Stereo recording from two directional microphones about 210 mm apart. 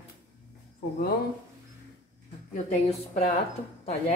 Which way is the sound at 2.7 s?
30° left (ahead or behind).